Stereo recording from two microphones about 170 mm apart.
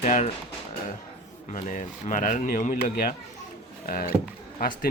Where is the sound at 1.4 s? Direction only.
45° left (ahead or behind).